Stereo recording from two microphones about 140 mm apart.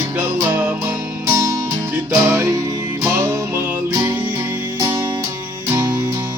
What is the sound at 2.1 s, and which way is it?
Music, 15° right (ahead or behind).